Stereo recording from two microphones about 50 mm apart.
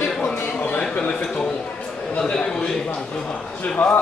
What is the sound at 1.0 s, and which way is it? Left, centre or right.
A man's voice, centre.